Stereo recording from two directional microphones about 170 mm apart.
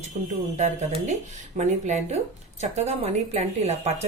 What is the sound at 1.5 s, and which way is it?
A woman's voice, 40° right (ahead or behind).